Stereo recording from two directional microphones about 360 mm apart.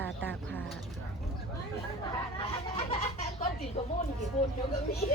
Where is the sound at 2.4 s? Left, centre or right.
Centre.